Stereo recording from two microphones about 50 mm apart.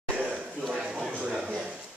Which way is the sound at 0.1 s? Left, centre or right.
Centre.